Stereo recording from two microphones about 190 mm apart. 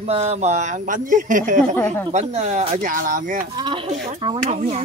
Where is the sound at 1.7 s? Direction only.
10° left (ahead or behind).